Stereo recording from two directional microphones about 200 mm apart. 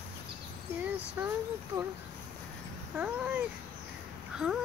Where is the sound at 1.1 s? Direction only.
15° right (ahead or behind).